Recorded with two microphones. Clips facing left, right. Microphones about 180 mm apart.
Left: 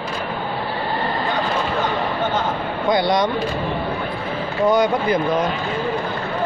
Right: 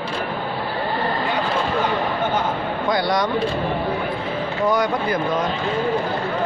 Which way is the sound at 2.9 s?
20° left (ahead or behind).